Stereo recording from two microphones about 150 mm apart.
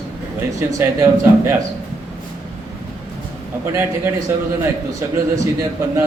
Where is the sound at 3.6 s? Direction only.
15° right (ahead or behind).